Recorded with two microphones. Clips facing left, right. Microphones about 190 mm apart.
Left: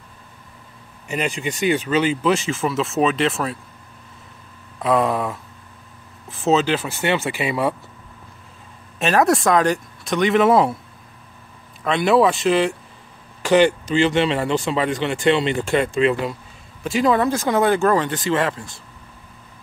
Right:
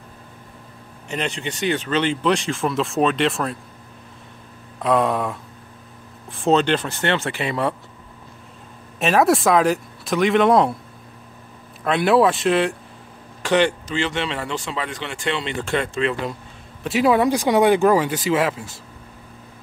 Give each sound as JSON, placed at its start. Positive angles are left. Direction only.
{"t": 1.0, "sound": "speech", "side_deg": 10}
{"t": 4.7, "sound": "speech", "side_deg": 0}
{"t": 9.0, "sound": "speech", "side_deg": 0}
{"t": 11.8, "sound": "a man's voice", "side_deg": 0}
{"t": 14.6, "sound": "speech", "side_deg": 25}
{"t": 15.0, "sound": "speech", "side_deg": 10}
{"t": 16.8, "sound": "speech", "side_deg": -5}